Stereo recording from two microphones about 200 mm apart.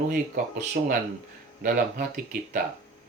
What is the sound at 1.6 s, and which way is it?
Speech, 45° right (ahead or behind).